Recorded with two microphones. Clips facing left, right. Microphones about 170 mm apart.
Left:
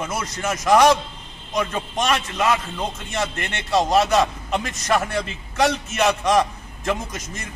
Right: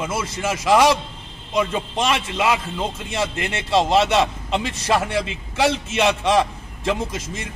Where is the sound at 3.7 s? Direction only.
25° right (ahead or behind).